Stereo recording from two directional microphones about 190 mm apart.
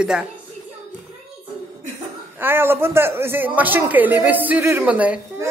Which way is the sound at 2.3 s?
10° right (ahead or behind).